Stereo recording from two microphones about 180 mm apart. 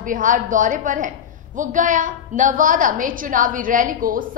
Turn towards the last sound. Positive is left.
turn(degrees=-50)  # may be behind; listen again after turning